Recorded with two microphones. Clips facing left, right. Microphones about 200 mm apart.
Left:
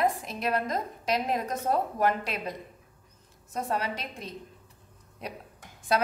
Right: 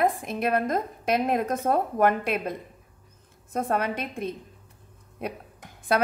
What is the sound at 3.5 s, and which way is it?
A woman's voice, 55° right (ahead or behind).